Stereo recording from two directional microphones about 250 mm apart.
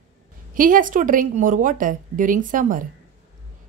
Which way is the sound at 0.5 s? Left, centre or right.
Right.